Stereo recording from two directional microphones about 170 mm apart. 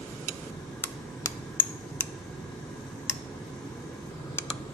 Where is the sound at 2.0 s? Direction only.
10° left (ahead or behind).